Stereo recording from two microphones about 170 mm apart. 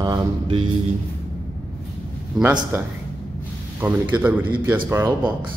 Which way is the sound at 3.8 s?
10° right (ahead or behind).